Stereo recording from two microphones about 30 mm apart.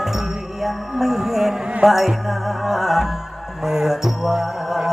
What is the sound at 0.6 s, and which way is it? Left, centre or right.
Music, centre.